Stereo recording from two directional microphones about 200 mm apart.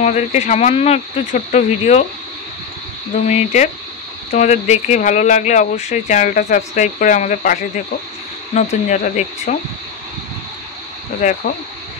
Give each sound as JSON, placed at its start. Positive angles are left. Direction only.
{"t": 0.0, "sound": "speech", "side_deg": 35}
{"t": 3.3, "sound": "speech", "side_deg": 35}
{"t": 11.1, "sound": "speech", "side_deg": 40}